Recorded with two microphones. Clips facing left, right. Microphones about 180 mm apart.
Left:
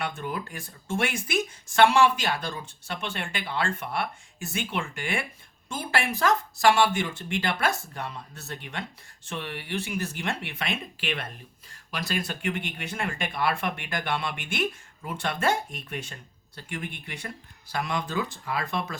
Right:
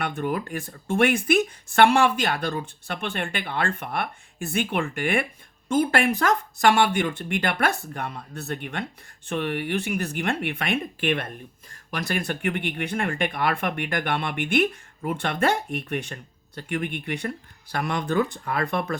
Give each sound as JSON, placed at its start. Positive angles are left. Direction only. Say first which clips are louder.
{"t": 0.0, "sound": "speech", "louder": "right 5 dB", "side_deg": -60}